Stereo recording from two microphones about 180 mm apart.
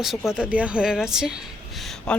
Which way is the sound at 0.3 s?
5° right (ahead or behind).